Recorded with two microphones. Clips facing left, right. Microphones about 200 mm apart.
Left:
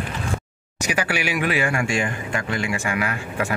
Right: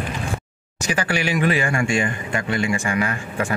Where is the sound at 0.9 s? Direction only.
10° left (ahead or behind).